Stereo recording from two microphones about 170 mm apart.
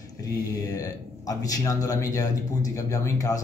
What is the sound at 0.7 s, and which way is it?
Speech, 20° left (ahead or behind).